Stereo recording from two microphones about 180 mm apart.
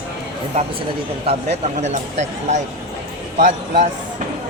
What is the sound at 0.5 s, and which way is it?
Speech, 35° right (ahead or behind).